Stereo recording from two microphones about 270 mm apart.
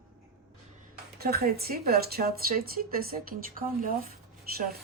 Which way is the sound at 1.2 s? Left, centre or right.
Right.